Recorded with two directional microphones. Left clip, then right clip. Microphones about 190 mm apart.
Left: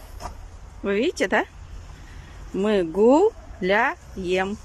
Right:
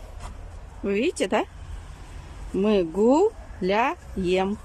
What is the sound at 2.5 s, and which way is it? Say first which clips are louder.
Speech: left 1 dB; 15° right (ahead or behind).